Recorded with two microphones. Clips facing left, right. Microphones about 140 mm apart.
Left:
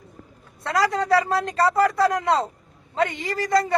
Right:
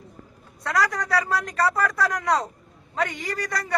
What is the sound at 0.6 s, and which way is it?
A man's voice, 25° left (ahead or behind).